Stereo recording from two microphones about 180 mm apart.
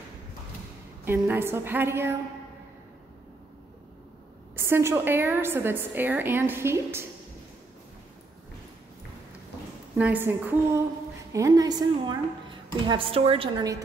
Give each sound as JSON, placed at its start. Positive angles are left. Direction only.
{"t": 1.0, "sound": "a woman's voice", "side_deg": -10}
{"t": 4.6, "sound": "a woman's voice", "side_deg": -15}
{"t": 9.9, "sound": "a woman's voice", "side_deg": -10}